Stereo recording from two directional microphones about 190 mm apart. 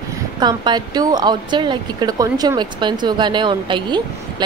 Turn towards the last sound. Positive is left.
turn(degrees=-25)  # may be behind; listen again after turning